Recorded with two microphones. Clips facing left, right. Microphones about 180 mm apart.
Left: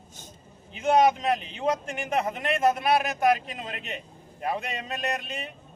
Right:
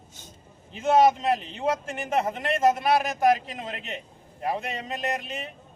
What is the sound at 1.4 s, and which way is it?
Speech, 35° right (ahead or behind).